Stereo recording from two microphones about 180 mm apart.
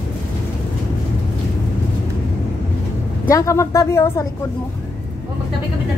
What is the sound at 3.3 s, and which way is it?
Speech, 15° left (ahead or behind).